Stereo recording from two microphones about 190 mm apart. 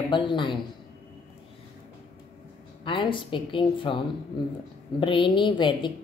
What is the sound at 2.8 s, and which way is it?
A woman's voice, 25° left (ahead or behind).